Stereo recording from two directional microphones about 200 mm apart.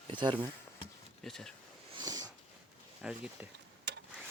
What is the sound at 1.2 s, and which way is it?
Speech, centre (ahead or behind).